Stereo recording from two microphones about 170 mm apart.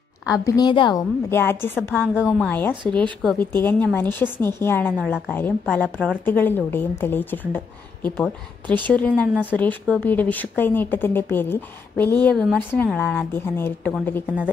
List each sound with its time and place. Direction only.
0.5 s a woman's voice: 25° left (ahead or behind)
1.3 s speech: 15° left (ahead or behind)
2.2 s speech: centre (ahead or behind)
5.0 s speech: centre (ahead or behind)
5.3 s speech: 10° left (ahead or behind)
8.6 s speech: 25° right (ahead or behind)
8.9 s speech: 5° left (ahead or behind)